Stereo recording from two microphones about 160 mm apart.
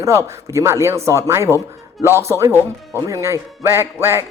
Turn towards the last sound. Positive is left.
turn(degrees=-15)  # may be behind; listen again after turning